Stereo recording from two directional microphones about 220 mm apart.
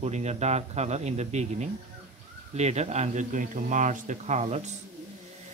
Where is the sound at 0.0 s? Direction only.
30° right (ahead or behind).